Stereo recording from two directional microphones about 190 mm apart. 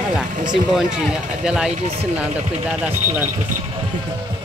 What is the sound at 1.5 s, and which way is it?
Speech, 5° right (ahead or behind).